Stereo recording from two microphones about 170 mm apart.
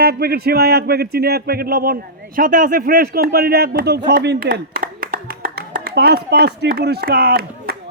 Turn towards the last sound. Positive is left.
turn(degrees=-65)  # may be behind; listen again after turning